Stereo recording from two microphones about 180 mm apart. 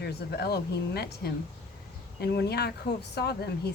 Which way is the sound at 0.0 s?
65° left (ahead or behind).